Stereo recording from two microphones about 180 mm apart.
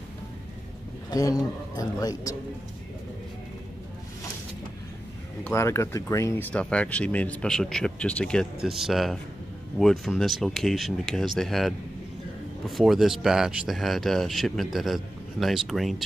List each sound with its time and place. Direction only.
1.1 s a man's voice: 20° left (ahead or behind)
5.4 s speech: 15° left (ahead or behind)